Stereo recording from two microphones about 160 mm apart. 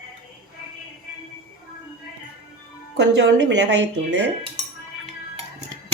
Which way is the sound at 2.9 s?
90° right.